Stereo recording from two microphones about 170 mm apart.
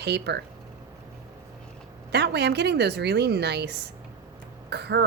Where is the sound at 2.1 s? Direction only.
75° right (ahead or behind).